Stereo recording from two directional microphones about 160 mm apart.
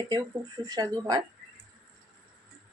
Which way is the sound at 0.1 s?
25° right (ahead or behind).